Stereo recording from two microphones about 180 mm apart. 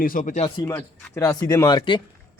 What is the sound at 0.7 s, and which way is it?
Speech, 20° left (ahead or behind).